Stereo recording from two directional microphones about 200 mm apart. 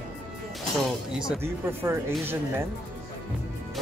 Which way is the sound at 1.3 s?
10° right (ahead or behind).